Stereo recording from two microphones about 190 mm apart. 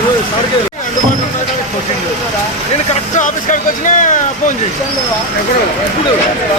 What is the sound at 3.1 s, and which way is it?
Speech, 40° left (ahead or behind).